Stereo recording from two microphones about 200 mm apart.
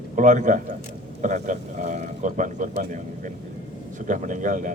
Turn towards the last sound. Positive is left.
turn(degrees=-40)  # may be behind; listen again after turning